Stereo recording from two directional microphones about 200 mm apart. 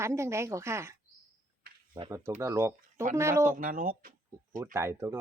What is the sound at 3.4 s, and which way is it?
Speech, 45° right (ahead or behind).